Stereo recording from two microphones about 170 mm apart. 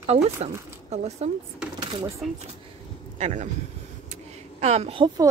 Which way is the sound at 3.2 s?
40° right (ahead or behind).